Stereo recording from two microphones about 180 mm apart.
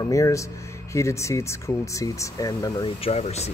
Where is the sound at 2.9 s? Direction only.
30° left (ahead or behind).